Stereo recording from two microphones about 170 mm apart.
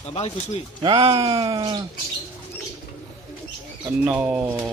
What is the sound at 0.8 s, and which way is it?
Speech, 25° right (ahead or behind).